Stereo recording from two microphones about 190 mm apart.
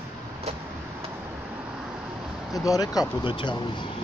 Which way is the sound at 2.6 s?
20° left (ahead or behind).